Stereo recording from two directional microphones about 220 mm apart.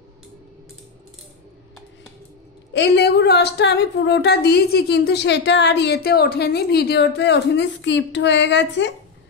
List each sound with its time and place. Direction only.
2.7 s a woman's voice: 50° left (ahead or behind)